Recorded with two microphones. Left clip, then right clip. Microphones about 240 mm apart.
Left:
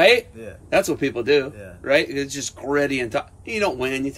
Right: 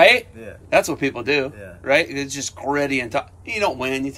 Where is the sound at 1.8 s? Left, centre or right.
Right.